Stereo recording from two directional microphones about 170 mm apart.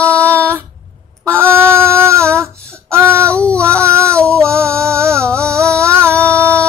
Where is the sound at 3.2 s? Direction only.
5° left (ahead or behind).